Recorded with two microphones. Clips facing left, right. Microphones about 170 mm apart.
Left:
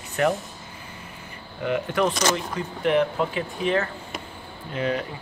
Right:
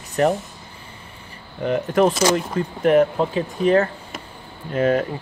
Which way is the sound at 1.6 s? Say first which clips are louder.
Right 5 dB; 40° right (ahead or behind).